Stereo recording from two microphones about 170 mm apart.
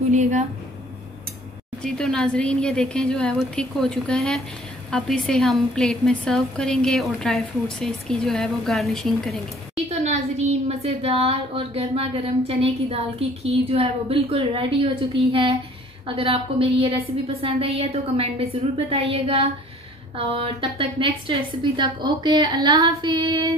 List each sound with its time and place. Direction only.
1.8 s a woman's voice: 5° left (ahead or behind)
9.8 s a child's voice: 40° right (ahead or behind); by 23.5 s 25° right (ahead or behind)